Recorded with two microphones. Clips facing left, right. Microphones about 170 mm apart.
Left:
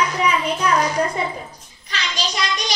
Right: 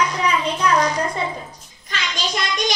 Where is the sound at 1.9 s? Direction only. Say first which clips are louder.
Even; 50° right (ahead or behind).